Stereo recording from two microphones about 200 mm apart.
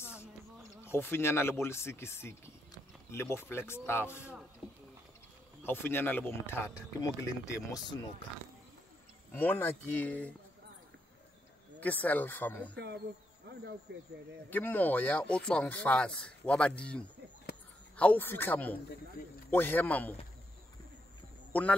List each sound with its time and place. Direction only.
0.8 s speech: 10° left (ahead or behind)
5.6 s speech: 10° left (ahead or behind)
9.3 s speech: 10° left (ahead or behind)
11.8 s speech: 10° left (ahead or behind)
12.7 s speech: 60° right (ahead or behind)
14.5 s speech: 10° left (ahead or behind)
19.2 s a sound: 45° left (ahead or behind)
19.5 s speech: 10° left (ahead or behind)
21.5 s speech: 5° left (ahead or behind)